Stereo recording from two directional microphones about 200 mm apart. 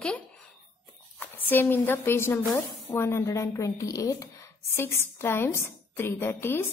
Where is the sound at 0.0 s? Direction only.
5° left (ahead or behind).